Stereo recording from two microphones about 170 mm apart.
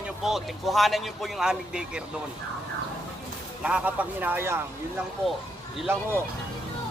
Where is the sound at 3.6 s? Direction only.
5° right (ahead or behind).